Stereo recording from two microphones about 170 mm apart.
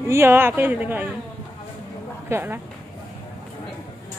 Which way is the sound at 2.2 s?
15° right (ahead or behind).